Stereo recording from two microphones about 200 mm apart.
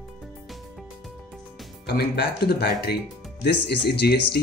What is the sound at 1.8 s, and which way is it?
Speech, 50° left (ahead or behind).